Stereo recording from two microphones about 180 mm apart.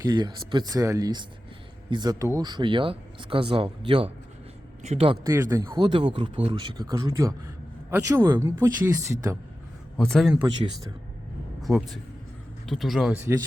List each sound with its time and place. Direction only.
0.0 s speech: 25° right (ahead or behind)
5.2 s speech: 15° right (ahead or behind)
5.7 s speech: 30° right (ahead or behind)
10.0 s speech: centre (ahead or behind)
11.7 s speech: 20° right (ahead or behind)
12.6 s speech: centre (ahead or behind)